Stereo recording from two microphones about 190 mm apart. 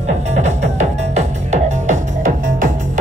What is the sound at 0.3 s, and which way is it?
Music, 40° right (ahead or behind).